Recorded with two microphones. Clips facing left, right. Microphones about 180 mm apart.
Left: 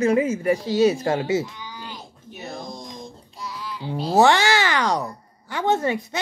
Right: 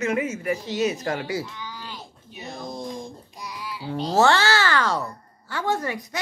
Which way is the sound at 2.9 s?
15° right (ahead or behind).